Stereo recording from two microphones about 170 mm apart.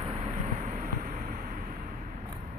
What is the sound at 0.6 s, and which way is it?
Vehicle, 50° right (ahead or behind).